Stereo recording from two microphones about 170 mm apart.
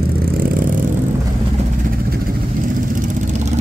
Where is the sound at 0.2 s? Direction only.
55° right (ahead or behind).